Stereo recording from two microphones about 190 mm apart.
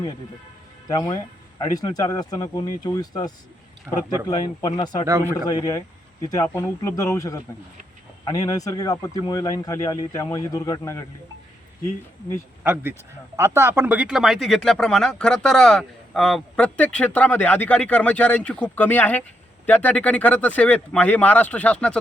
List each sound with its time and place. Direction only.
0.9 s speech: 20° left (ahead or behind)
5.0 s a man's voice: 15° right (ahead or behind)
5.5 s speech: 20° left (ahead or behind)
12.6 s speech: 10° right (ahead or behind); by 21.9 s 5° left (ahead or behind)